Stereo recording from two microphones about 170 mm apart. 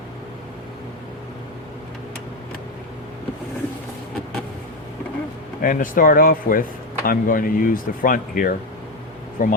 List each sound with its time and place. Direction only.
5.6 s speech: 55° left (ahead or behind)